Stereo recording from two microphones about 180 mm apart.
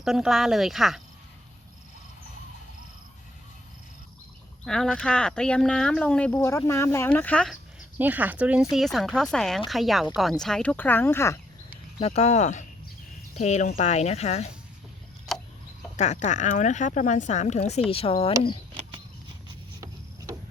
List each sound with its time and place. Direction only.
0.0 s speech: centre (ahead or behind)
4.6 s speech: 5° left (ahead or behind)
7.5 s speech: 10° right (ahead or behind); by 11.3 s 15° left (ahead or behind)
11.9 s speech: 35° left (ahead or behind)
15.3 s a sound: centre (ahead or behind)
16.0 s speech: 40° left (ahead or behind)